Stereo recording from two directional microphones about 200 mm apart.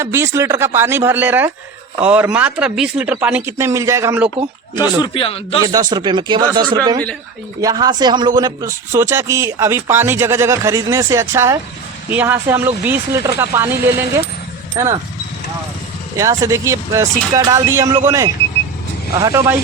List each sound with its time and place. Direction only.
0.0 s speech: 15° right (ahead or behind)
4.7 s speech: 20° left (ahead or behind)
5.6 s speech: 20° right (ahead or behind)
16.1 s speech: 15° right (ahead or behind)